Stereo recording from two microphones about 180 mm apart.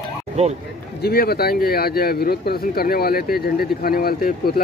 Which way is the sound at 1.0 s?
60° left (ahead or behind).